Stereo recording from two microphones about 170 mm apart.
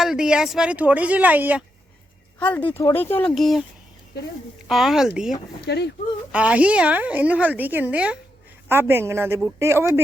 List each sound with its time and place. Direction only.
0.0 s a woman's voice: 5° right (ahead or behind)
2.5 s speech: 10° left (ahead or behind)
3.3 s speech: centre (ahead or behind)
4.7 s speech: centre (ahead or behind)
5.6 s speech: 80° left
6.3 s a woman's voice: 5° right (ahead or behind)